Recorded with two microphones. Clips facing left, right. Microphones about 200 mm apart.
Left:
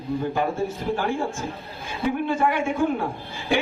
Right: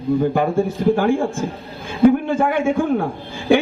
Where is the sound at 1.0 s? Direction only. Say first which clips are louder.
Right 8 dB; 50° right (ahead or behind).